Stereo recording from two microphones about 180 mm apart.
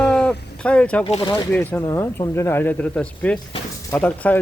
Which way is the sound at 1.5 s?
10° left (ahead or behind).